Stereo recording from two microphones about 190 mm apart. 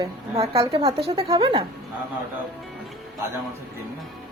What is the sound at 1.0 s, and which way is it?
Speech, 30° right (ahead or behind).